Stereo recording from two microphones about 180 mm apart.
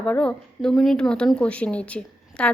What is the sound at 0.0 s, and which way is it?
Speech, 5° left (ahead or behind).